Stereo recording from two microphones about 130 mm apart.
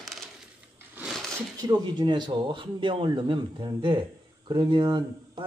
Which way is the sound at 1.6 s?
30° right (ahead or behind).